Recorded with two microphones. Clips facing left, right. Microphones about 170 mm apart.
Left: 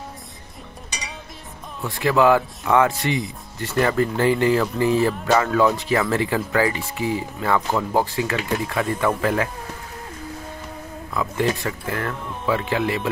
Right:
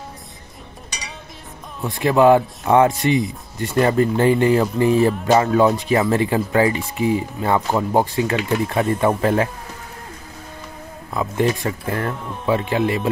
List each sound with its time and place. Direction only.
1.9 s speech: 20° right (ahead or behind)
11.1 s speech: 20° right (ahead or behind)